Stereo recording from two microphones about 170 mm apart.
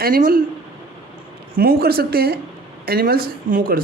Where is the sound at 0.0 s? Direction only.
55° right (ahead or behind).